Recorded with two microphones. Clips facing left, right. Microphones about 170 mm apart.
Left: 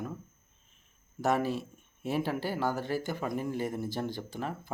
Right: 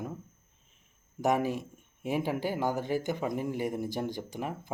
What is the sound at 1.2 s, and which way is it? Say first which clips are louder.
Speech: right 1 dB; 15° right (ahead or behind).